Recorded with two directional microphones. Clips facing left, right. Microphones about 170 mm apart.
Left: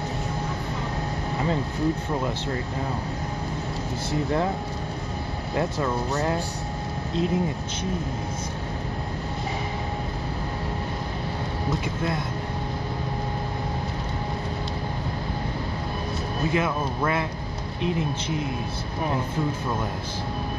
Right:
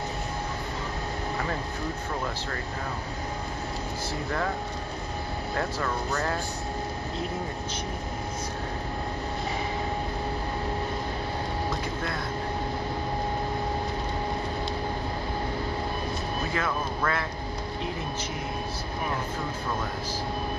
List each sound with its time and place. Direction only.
5.6 s speech: 20° left (ahead or behind)
16.5 s speech: 20° left (ahead or behind)